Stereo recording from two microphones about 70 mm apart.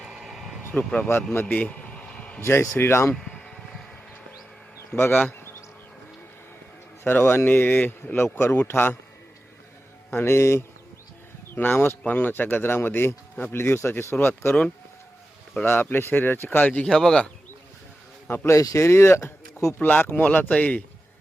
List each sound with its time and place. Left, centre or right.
0.0 s vehicle: centre
0.7 s speech: centre
1.3 s a sound: left
2.4 s speech: left
3.2 s a sound: centre
4.9 s speech: left
7.0 s speech: left
10.1 s speech: left
11.5 s speech: left
15.6 s speech: left
16.9 s speech: centre
18.4 s speech: left
19.8 s speech: left